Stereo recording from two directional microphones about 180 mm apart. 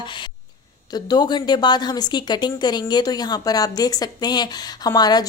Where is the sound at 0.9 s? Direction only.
25° left (ahead or behind).